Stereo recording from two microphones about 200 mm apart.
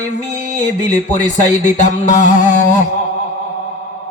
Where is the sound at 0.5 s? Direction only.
35° left (ahead or behind).